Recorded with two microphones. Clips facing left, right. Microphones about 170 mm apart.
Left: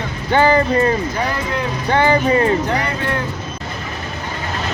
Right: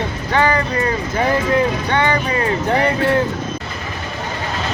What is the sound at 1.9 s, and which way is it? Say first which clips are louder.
Speech: left 7 dB; 30° left (ahead or behind).